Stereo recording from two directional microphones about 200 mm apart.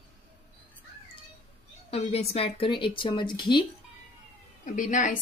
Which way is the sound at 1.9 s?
30° left (ahead or behind).